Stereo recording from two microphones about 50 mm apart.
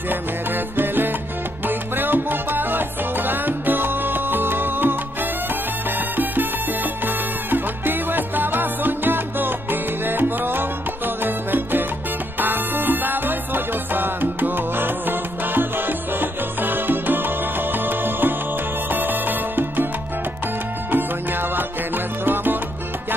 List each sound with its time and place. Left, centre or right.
0.7 s salsa music: right
5.9 s music: right
20.9 s music: right